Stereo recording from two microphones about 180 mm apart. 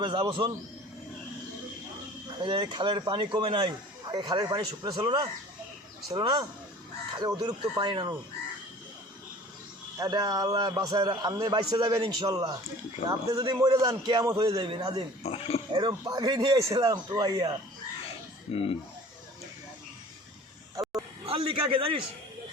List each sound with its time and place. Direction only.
0.0 s speech: 30° right (ahead or behind)
2.4 s speech: 25° right (ahead or behind)
10.0 s speech: 20° right (ahead or behind)
15.2 s speech: 35° left (ahead or behind)
15.8 s speech: 25° right (ahead or behind)
18.5 s speech: 30° left (ahead or behind)
21.2 s a man's voice: 30° right (ahead or behind)